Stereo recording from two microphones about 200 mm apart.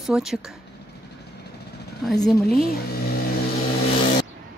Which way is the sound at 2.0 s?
Centre (ahead or behind).